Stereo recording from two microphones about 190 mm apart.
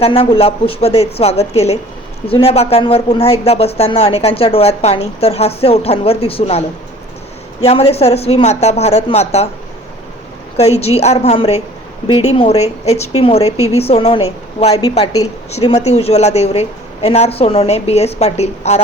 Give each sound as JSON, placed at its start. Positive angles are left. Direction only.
{"t": 0.0, "sound": "speech", "side_deg": 30}
{"t": 10.6, "sound": "speech", "side_deg": 35}